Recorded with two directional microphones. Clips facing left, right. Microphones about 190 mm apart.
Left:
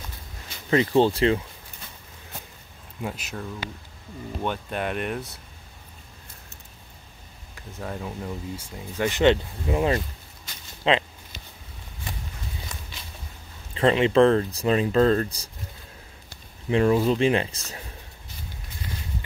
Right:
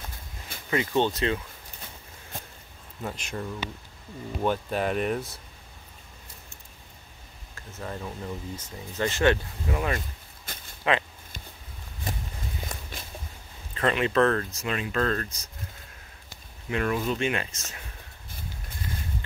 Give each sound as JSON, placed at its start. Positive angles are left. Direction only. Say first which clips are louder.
{"t": 0.7, "sound": "speech", "louder": "left 5 dB", "side_deg": 30}
{"t": 3.0, "sound": "speech", "louder": "left 1 dB", "side_deg": 5}
{"t": 7.8, "sound": "speech", "louder": "left 2 dB", "side_deg": 5}
{"t": 10.5, "sound": "a sound", "louder": "right 4 dB", "side_deg": -50}
{"t": 10.8, "sound": "a sound", "louder": "left 3 dB", "side_deg": 20}
{"t": 12.7, "sound": "walk", "louder": "right 2 dB", "side_deg": -50}
{"t": 13.7, "sound": "speech", "louder": "left 5 dB", "side_deg": 25}
{"t": 16.7, "sound": "speech", "louder": "left 7 dB", "side_deg": 30}